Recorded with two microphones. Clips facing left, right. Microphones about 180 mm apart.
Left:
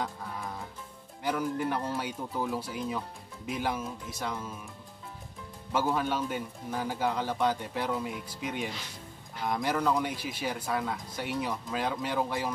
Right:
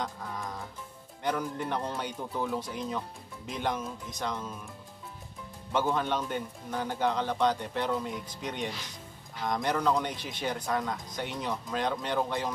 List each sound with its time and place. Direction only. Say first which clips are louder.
0.0 s music: even; 5° left (ahead or behind)
1.2 s speech: left 2 dB; 5° left (ahead or behind)
5.7 s speech: even; 5° left (ahead or behind)